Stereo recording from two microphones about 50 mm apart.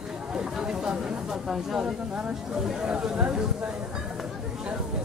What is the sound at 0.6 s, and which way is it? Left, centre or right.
Chatter, centre.